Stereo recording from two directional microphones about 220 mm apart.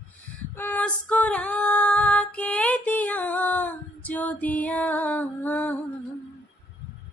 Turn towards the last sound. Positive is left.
turn(degrees=5)  # may be behind; listen again after turning